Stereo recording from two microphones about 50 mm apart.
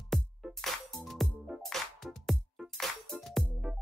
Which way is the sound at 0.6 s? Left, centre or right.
Centre.